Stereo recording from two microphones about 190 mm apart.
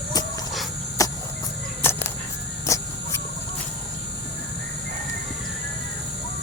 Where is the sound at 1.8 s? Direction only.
10° left (ahead or behind).